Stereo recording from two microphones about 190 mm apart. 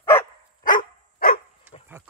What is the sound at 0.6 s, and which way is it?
Dog, 50° left (ahead or behind).